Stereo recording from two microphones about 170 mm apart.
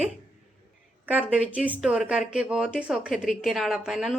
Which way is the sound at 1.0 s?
10° right (ahead or behind).